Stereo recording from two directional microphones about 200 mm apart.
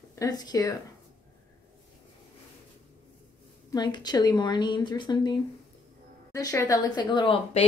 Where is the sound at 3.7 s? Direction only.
20° left (ahead or behind).